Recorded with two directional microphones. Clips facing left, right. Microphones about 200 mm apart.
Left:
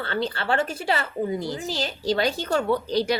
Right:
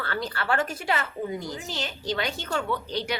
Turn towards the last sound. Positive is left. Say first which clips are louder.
# left 7 dB
turn(degrees=35)  # may be behind; listen again after turning